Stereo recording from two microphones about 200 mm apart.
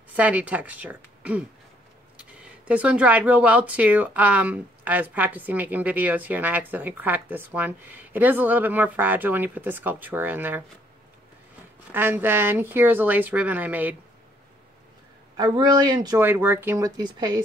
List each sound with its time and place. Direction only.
0.1 s speech: 5° right (ahead or behind)
11.9 s speech: 10° right (ahead or behind)
15.3 s speech: 20° right (ahead or behind)